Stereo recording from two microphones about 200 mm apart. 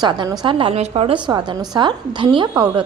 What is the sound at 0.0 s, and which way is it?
A woman's voice, 20° right (ahead or behind).